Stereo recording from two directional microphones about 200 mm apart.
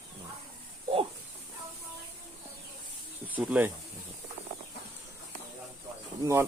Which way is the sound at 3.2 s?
10° right (ahead or behind).